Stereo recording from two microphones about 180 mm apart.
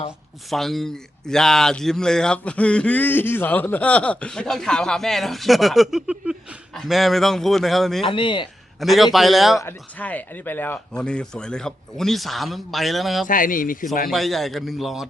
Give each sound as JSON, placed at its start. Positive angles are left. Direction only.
{"t": 0.5, "sound": "a man's voice", "side_deg": 0}
{"t": 8.0, "sound": "speech", "side_deg": 30}
{"t": 8.8, "sound": "a man's voice", "side_deg": 0}
{"t": 9.6, "sound": "a man's voice", "side_deg": 10}
{"t": 13.2, "sound": "speech", "side_deg": 50}
{"t": 14.1, "sound": "a man's voice", "side_deg": 0}